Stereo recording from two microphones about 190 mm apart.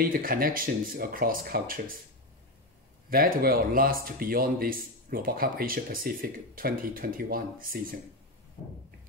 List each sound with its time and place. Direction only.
0.0 s speech: 50° right (ahead or behind)
3.1 s speech: 50° right (ahead or behind)